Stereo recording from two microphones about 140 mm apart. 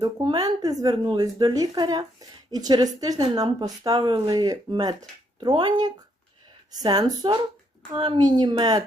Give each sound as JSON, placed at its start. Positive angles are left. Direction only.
{"t": 0.0, "sound": "speech", "side_deg": -30}